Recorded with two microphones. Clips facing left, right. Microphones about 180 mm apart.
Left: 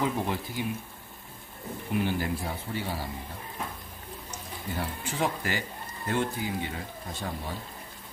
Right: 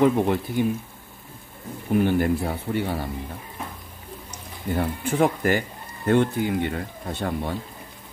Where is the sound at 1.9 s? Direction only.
55° right (ahead or behind).